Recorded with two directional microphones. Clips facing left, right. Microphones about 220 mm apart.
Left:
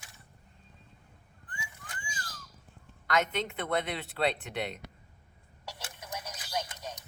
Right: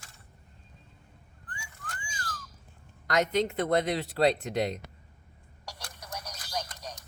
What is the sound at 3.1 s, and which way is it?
Speech, 40° right (ahead or behind).